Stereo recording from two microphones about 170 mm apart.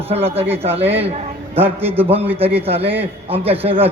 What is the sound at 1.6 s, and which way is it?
Speech, 10° right (ahead or behind).